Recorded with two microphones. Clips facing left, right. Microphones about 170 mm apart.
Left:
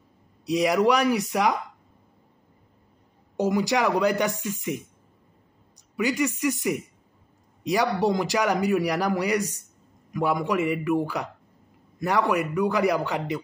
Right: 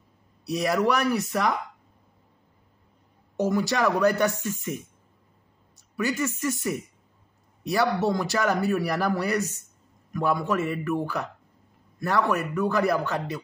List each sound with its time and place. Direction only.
0.5 s a man's voice: 15° left (ahead or behind)
3.3 s a man's voice: 15° left (ahead or behind)